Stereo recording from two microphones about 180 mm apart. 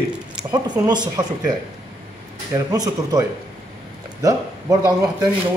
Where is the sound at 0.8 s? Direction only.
20° right (ahead or behind).